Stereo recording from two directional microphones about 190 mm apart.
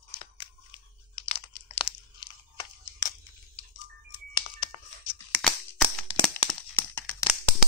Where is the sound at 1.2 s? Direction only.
35° left (ahead or behind).